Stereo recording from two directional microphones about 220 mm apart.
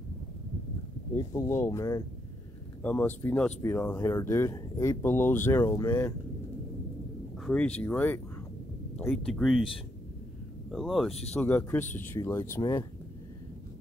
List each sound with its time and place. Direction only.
1.1 s speech: 15° left (ahead or behind)
7.3 s speech: 5° left (ahead or behind)
10.7 s speech: centre (ahead or behind)